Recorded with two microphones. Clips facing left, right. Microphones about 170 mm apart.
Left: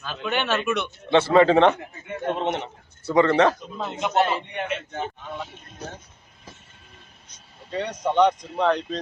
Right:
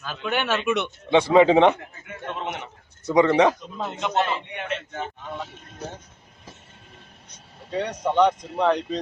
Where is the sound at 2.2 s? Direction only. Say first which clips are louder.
Left 6 dB; 35° left (ahead or behind).